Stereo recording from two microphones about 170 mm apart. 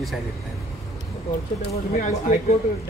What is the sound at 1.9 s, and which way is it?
Speech, 45° left (ahead or behind).